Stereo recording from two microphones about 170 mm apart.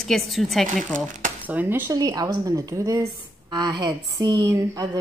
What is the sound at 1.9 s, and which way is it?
Speech, 25° right (ahead or behind).